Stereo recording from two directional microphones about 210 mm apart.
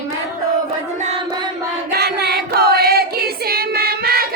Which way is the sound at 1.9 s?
50° right (ahead or behind).